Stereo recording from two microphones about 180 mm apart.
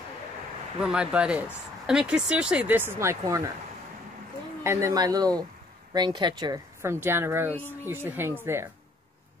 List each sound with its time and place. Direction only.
0.7 s speech: 5° right (ahead or behind)
4.6 s speech: 15° right (ahead or behind)
7.5 s speech: 10° left (ahead or behind)
7.9 s speech: 10° right (ahead or behind)